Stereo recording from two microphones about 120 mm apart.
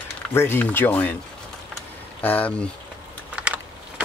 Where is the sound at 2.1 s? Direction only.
15° left (ahead or behind).